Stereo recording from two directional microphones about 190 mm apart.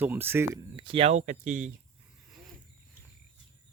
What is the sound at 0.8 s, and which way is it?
Speech, 30° right (ahead or behind).